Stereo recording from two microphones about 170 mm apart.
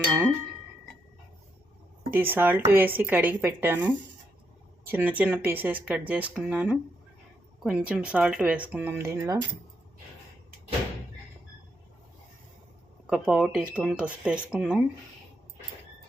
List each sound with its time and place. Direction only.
2.0 s speech: 10° right (ahead or behind)
13.1 s speech: 5° right (ahead or behind)